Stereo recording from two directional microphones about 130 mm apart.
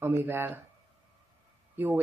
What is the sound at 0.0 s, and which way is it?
Speech, 15° right (ahead or behind).